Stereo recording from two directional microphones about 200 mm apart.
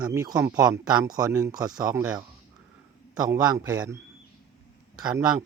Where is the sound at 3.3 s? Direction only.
15° right (ahead or behind).